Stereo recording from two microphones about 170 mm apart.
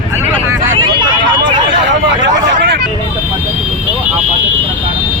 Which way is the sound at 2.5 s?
85° right.